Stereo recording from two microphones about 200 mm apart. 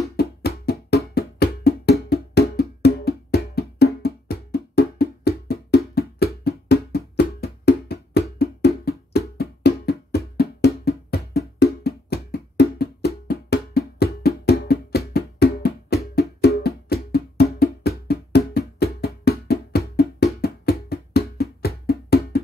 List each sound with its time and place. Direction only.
0.1 s music: 50° left (ahead or behind)